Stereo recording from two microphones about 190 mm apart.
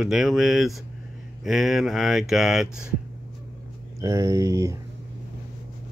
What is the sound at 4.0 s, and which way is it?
Speech, 15° right (ahead or behind).